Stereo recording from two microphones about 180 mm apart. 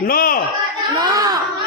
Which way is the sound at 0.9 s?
20° right (ahead or behind).